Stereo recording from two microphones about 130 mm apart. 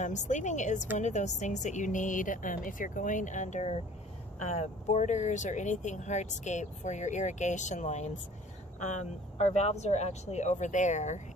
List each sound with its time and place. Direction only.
0.0 s speech: 70° left (ahead or behind)